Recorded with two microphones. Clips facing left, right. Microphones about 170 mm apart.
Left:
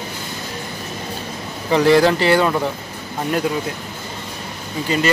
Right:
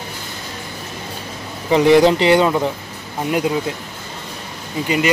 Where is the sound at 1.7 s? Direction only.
20° right (ahead or behind).